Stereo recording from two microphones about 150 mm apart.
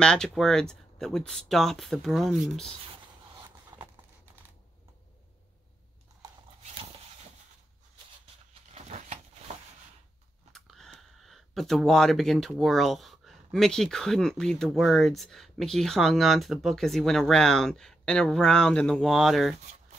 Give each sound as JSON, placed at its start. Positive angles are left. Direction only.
{"t": 0.0, "sound": "speech", "side_deg": 5}
{"t": 8.7, "sound": "a sound", "side_deg": -50}
{"t": 10.5, "sound": "speech", "side_deg": 0}